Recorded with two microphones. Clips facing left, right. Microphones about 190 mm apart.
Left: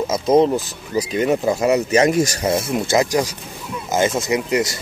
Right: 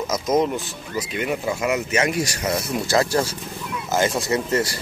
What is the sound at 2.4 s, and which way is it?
Speech, 25° left (ahead or behind).